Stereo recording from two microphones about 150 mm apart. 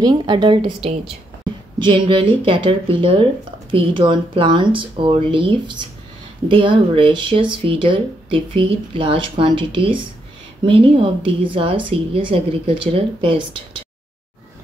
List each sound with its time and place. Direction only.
0.0 s speech: 30° right (ahead or behind)